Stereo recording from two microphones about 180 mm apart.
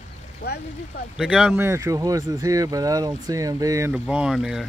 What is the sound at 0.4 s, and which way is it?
Speech, 65° left (ahead or behind).